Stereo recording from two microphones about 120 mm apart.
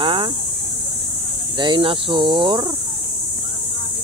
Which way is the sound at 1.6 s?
45° right (ahead or behind).